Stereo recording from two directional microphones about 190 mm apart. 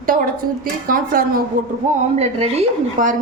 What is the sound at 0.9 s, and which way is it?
Speech, 50° right (ahead or behind).